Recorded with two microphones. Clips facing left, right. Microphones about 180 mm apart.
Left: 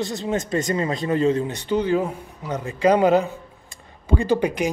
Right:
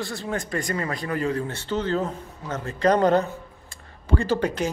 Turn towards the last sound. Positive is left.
turn(degrees=15)  # may be behind; listen again after turning